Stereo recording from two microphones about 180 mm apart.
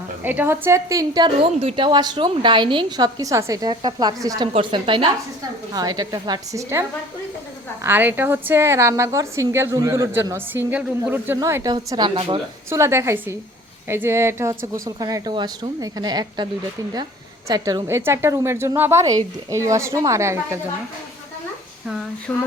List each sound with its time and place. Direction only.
0.2 s a woman's voice: 10° right (ahead or behind)
7.9 s a woman's voice: 10° right (ahead or behind); by 12.4 s 30° right (ahead or behind)
12.7 s a woman's voice: 15° right (ahead or behind)
17.5 s a woman's voice: 20° right (ahead or behind)
22.3 s a sound: 10° left (ahead or behind)